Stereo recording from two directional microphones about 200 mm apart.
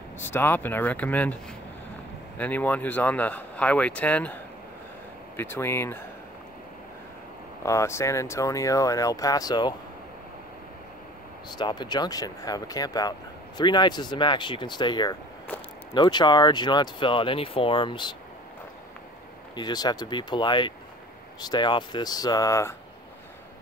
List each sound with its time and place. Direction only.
0.2 s speech: 10° left (ahead or behind)
7.6 s speech: 15° left (ahead or behind)
11.5 s speech: 20° left (ahead or behind)
19.5 s speech: 20° left (ahead or behind)